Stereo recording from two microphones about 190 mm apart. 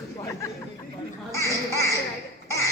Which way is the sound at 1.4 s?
15° left (ahead or behind).